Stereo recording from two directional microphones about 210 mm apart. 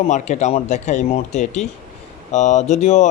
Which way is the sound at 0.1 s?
35° left (ahead or behind).